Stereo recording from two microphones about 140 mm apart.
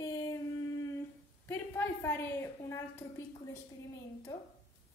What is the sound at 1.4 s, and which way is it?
Speech, 15° left (ahead or behind).